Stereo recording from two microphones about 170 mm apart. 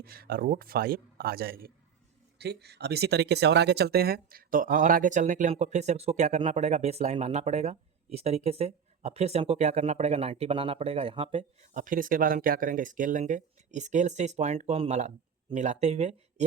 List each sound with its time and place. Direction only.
0.0 s a man's voice: 65° right (ahead or behind)
2.4 s speech: 75° right (ahead or behind); by 11.4 s 35° right (ahead or behind)
11.7 s speech: 50° right (ahead or behind)